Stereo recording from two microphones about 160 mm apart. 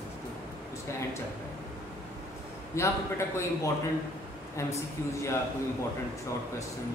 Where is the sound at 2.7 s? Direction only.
15° left (ahead or behind).